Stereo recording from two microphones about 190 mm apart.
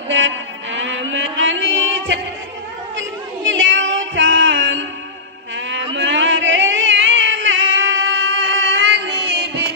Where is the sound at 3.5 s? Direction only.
80° right.